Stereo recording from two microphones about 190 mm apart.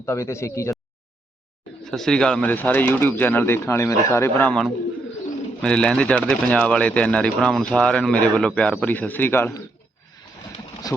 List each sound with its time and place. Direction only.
0.0 s speech: 15° left (ahead or behind)
1.8 s speech: centre (ahead or behind)
10.8 s speech: 20° left (ahead or behind)